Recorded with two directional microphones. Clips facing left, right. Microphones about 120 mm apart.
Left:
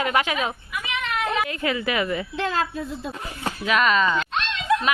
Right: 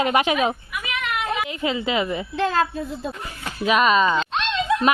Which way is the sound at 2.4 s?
35° right (ahead or behind).